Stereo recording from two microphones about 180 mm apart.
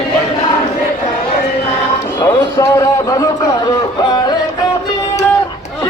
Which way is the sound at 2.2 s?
15° left (ahead or behind).